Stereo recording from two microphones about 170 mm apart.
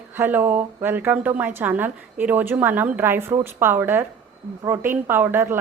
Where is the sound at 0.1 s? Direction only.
10° right (ahead or behind).